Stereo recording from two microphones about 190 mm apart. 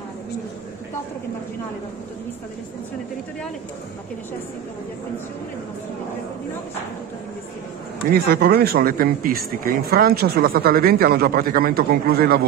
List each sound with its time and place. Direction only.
8.1 s speech: 55° right (ahead or behind)